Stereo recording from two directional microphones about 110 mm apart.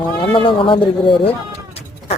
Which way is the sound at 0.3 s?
50° left (ahead or behind).